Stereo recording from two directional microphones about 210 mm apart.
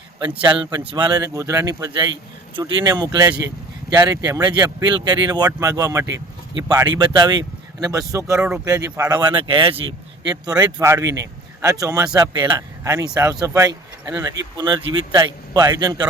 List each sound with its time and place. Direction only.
0.4 s a man's voice: 20° right (ahead or behind)